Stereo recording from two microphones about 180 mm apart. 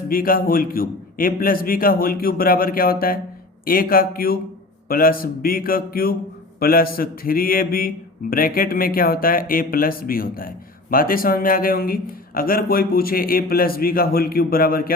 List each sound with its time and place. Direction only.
0.1 s a man's voice: 55° left (ahead or behind)